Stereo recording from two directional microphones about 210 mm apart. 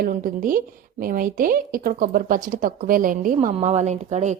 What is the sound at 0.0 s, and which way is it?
A woman's voice, 40° right (ahead or behind).